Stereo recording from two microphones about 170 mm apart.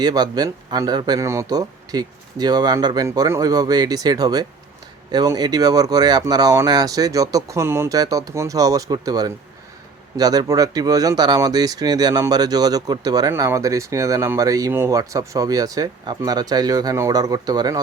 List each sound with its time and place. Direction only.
0.0 s speech: 25° right (ahead or behind)